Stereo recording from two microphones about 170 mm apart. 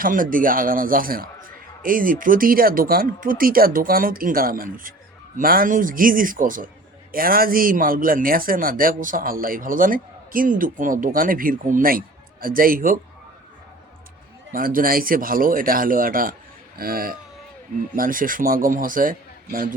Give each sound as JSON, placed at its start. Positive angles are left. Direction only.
{"t": 0.0, "sound": "speech", "side_deg": -55}
{"t": 14.5, "sound": "speech", "side_deg": -55}